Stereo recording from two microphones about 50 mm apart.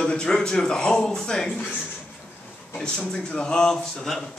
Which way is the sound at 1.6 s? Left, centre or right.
Left.